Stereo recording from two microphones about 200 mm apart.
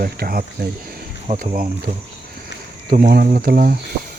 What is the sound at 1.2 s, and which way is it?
Speech, 35° right (ahead or behind).